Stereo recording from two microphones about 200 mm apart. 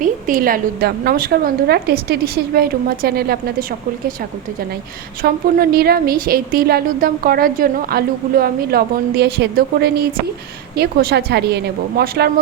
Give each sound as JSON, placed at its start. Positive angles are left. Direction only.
{"t": 0.0, "sound": "a woman's voice", "side_deg": -45}
{"t": 5.2, "sound": "a woman's voice", "side_deg": -50}